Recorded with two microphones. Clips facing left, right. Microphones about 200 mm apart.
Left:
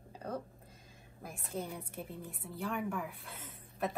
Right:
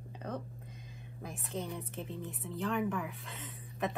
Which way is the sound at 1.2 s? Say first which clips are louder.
Right 1 dB; centre (ahead or behind).